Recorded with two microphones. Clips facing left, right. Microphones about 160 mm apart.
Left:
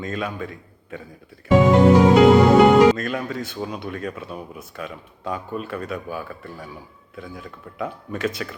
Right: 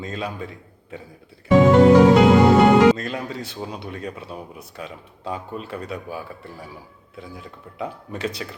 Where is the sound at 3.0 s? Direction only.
30° right (ahead or behind).